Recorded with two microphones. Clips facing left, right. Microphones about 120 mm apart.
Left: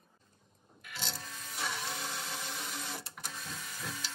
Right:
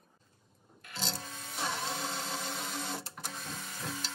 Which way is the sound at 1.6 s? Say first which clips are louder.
Right 3 dB; 40° right (ahead or behind).